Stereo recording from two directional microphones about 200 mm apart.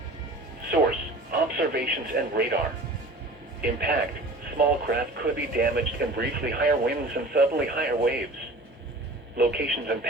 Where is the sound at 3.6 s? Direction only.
50° right (ahead or behind).